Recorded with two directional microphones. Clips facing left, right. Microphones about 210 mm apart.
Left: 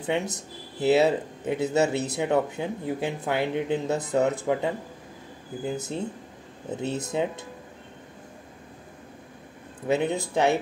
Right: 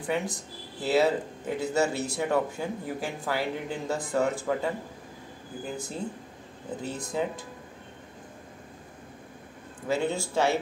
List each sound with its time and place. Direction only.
0.0 s speech: 25° left (ahead or behind)
9.8 s speech: 20° left (ahead or behind)